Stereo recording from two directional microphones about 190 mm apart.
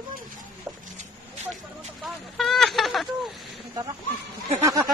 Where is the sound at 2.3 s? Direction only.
Centre (ahead or behind).